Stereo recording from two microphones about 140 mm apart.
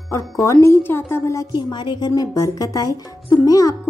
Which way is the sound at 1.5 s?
30° left (ahead or behind).